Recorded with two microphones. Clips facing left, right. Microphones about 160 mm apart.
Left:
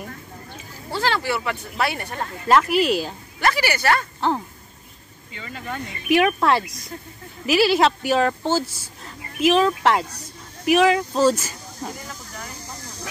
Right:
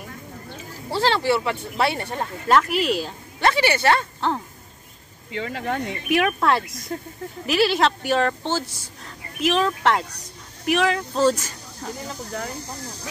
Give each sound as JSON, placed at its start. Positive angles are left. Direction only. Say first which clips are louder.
{"t": 0.8, "sound": "speech", "louder": "right 3 dB", "side_deg": -30}
{"t": 2.4, "sound": "a woman's voice", "louder": "left 2 dB", "side_deg": 0}
{"t": 3.3, "sound": "speech", "louder": "right 2 dB", "side_deg": -25}
{"t": 4.2, "sound": "a woman's voice", "louder": "left 3 dB", "side_deg": 5}
{"t": 5.3, "sound": "speech", "louder": "right 6 dB", "side_deg": -70}
{"t": 6.0, "sound": "a woman's voice", "louder": "left 3 dB", "side_deg": 0}